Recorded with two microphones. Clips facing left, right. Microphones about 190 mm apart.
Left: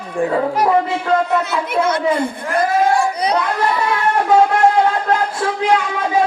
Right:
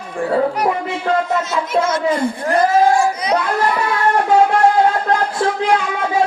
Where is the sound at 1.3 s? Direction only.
60° left (ahead or behind).